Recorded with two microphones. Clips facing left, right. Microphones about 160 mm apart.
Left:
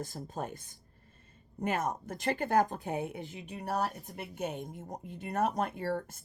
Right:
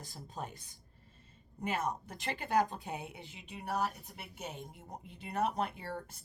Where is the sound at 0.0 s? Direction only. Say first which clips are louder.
Left 6 dB; 50° left (ahead or behind).